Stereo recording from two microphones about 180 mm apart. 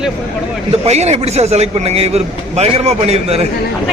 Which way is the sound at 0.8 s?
40° right (ahead or behind).